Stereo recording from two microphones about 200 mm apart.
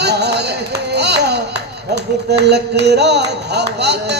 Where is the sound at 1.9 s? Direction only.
55° right (ahead or behind).